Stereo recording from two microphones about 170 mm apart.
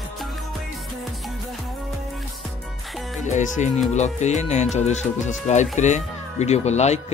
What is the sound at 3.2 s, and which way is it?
Speech, 45° left (ahead or behind).